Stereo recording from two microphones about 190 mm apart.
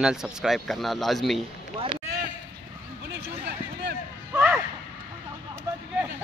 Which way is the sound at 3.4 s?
60° right (ahead or behind).